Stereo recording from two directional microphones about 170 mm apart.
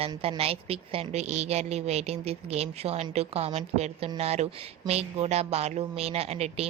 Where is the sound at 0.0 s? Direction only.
35° right (ahead or behind).